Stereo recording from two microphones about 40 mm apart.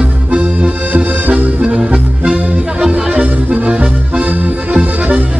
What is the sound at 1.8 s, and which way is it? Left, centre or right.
Music, right.